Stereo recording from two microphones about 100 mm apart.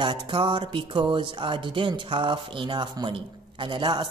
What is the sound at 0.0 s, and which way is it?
Music, 55° right (ahead or behind).